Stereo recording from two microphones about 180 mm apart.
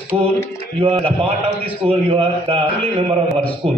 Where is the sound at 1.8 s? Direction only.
30° right (ahead or behind).